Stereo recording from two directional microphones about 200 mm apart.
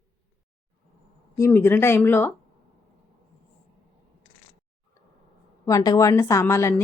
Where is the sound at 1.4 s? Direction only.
10° left (ahead or behind).